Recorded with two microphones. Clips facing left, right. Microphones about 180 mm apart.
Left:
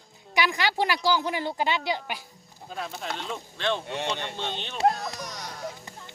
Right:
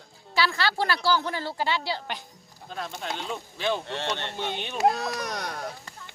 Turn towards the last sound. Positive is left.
turn(degrees=-65)  # may be behind; listen again after turning